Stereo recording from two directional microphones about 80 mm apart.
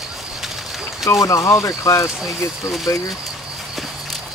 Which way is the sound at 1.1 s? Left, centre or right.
Left.